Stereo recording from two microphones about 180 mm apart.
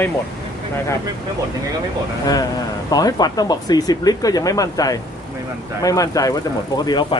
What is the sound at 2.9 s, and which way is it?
Speech, 20° left (ahead or behind).